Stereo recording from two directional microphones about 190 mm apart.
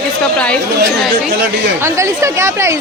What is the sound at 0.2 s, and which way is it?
Speech, 5° left (ahead or behind).